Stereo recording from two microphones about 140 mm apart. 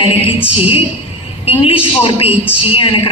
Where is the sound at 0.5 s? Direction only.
45° left (ahead or behind).